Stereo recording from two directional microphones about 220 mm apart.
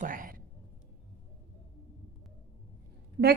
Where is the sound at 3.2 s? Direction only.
50° right (ahead or behind).